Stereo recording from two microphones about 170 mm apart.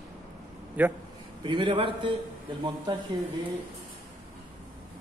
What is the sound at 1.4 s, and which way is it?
Speech, 30° right (ahead or behind).